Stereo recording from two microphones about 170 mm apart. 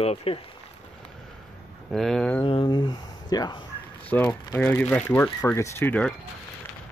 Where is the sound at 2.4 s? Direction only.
30° left (ahead or behind).